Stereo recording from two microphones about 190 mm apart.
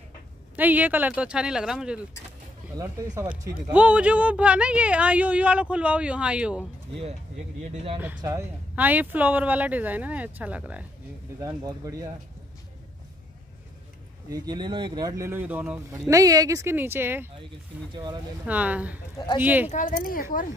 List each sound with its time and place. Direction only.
0.6 s speech: 10° right (ahead or behind)
2.8 s speech: 15° right (ahead or behind)
7.7 s speech: 30° right (ahead or behind)
8.7 s speech: 10° right (ahead or behind)
11.3 s speech: 20° right (ahead or behind)
14.3 s speech: 20° right (ahead or behind)
19.1 s speech: 25° left (ahead or behind)
19.4 s speech: 10° right (ahead or behind)
19.7 s speech: 45° left (ahead or behind)